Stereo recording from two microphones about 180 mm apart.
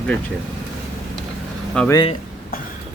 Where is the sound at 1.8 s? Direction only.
5° left (ahead or behind).